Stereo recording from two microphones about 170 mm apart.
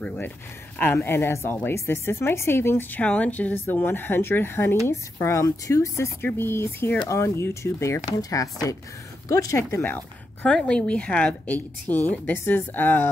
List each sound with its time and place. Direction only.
0.0 s speech: 10° left (ahead or behind)